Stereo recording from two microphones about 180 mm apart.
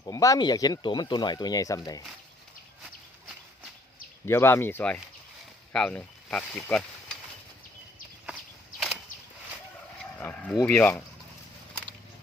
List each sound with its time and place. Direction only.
0.0 s speech: 20° left (ahead or behind)
4.3 s speech: 15° left (ahead or behind)
10.0 s livestock: 10° left (ahead or behind)
10.6 s speech: 10° left (ahead or behind)